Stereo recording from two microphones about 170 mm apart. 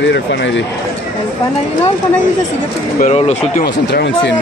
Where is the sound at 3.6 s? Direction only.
85° left.